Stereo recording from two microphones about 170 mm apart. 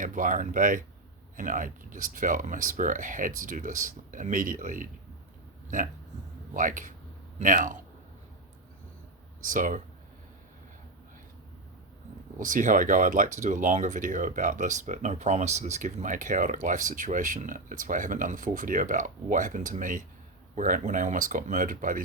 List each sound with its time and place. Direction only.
0.0 s speech: 50° right (ahead or behind)
6.5 s speech: 50° right (ahead or behind)
9.4 s speech: 50° right (ahead or behind)
12.4 s speech: 50° right (ahead or behind)